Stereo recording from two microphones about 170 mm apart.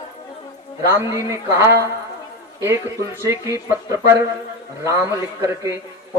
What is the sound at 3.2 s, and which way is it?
Speech, 20° right (ahead or behind).